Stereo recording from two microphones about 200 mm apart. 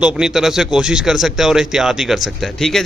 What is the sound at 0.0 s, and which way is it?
Speech, 5° right (ahead or behind).